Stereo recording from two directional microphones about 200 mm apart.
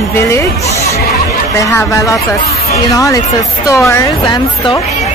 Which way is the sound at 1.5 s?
15° left (ahead or behind).